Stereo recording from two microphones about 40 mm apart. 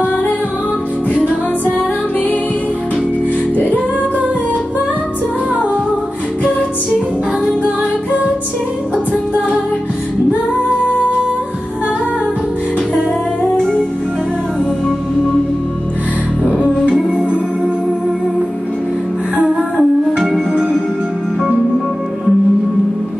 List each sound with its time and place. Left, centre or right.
13.4 s music: centre
19.4 s music: centre